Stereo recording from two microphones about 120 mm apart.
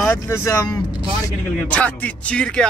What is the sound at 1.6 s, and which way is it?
A man's voice, 10° left (ahead or behind).